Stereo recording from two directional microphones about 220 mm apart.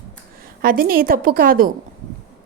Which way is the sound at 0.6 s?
40° right (ahead or behind).